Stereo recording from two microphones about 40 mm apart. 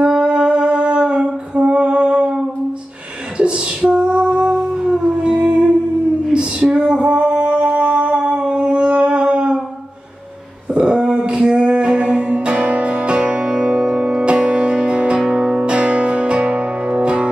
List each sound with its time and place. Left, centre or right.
0.0 s singing: right
3.9 s female singing: right
4.6 s howl: centre
6.3 s female singing: right
7.7 s a sound: right
10.7 s music: right